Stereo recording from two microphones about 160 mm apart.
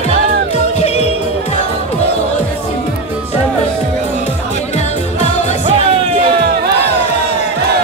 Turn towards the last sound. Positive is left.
turn(degrees=-80)